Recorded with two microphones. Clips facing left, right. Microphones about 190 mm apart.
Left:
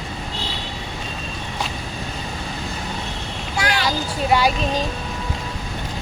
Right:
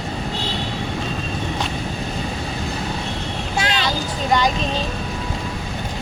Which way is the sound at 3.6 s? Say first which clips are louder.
Left 1 dB; 25° right (ahead or behind).